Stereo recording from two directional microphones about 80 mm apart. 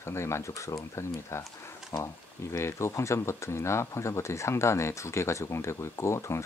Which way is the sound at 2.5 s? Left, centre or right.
Left.